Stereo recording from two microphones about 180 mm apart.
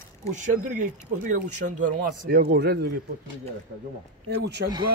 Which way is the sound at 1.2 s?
50° right (ahead or behind).